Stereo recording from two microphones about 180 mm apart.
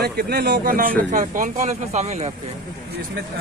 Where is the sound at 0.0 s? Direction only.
60° right (ahead or behind); by 2.3 s 40° right (ahead or behind).